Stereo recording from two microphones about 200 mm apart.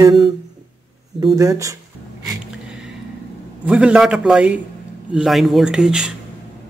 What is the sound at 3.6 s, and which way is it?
A man's voice, 5° right (ahead or behind).